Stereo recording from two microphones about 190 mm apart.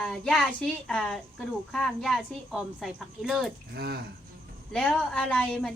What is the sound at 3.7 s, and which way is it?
Speech, 55° right (ahead or behind).